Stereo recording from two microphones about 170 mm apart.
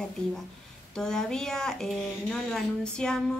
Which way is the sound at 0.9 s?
5° left (ahead or behind).